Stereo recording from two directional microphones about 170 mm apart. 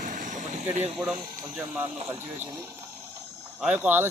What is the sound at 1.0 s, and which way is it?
Speech, 5° right (ahead or behind).